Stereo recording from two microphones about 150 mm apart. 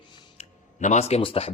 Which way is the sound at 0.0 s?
30° left (ahead or behind).